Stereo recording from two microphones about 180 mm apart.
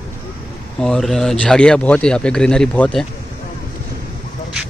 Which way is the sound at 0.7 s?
5° left (ahead or behind).